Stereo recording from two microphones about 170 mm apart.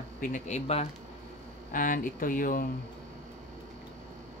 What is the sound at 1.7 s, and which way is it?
Speech, 55° left (ahead or behind).